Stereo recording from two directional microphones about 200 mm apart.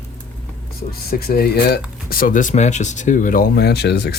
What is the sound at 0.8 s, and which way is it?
Speech, 50° left (ahead or behind).